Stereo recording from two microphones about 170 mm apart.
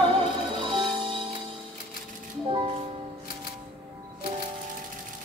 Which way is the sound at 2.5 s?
35° right (ahead or behind).